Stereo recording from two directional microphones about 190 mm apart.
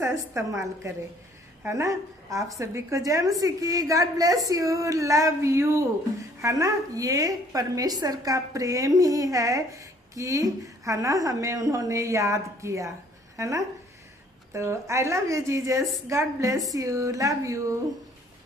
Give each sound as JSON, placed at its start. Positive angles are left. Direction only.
{"t": 0.0, "sound": "a woman's voice", "side_deg": -15}